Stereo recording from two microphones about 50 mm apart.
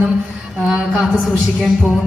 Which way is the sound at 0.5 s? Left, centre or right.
Centre.